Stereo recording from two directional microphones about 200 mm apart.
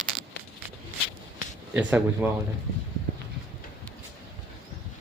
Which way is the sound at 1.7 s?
10° right (ahead or behind).